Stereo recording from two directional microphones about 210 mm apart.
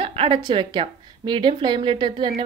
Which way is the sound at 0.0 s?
25° right (ahead or behind).